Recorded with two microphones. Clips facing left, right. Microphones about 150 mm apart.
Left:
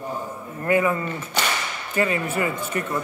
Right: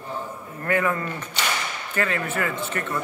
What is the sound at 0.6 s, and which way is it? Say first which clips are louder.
Speech: left 3 dB; 15° left (ahead or behind).